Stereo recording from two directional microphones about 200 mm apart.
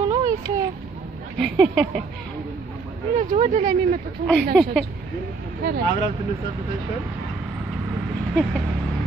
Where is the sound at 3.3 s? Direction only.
35° right (ahead or behind).